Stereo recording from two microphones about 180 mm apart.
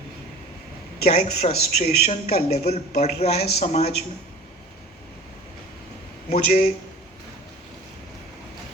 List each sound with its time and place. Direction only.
1.0 s speech: 35° left (ahead or behind)
6.3 s speech: 40° left (ahead or behind)